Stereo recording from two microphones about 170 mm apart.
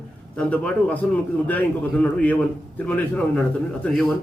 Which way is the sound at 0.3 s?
5° left (ahead or behind).